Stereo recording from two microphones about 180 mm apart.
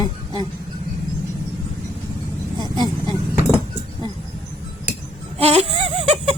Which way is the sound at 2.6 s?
25° right (ahead or behind).